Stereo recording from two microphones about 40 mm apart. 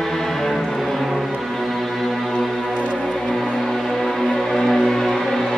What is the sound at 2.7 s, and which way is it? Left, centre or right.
Music, left.